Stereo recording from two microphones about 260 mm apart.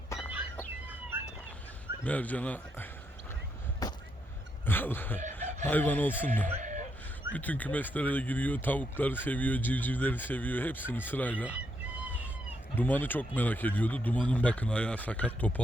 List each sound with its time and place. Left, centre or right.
2.0 s speech: centre
3.8 s a sound: centre
5.4 s chicken: right
5.6 s speech: centre
6.6 s a sound: right
7.3 s speech: centre
12.7 s speech: centre